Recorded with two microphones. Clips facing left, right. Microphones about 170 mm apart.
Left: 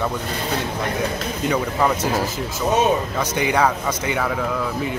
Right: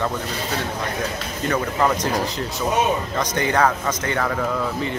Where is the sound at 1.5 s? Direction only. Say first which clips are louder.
Even; 5° left (ahead or behind).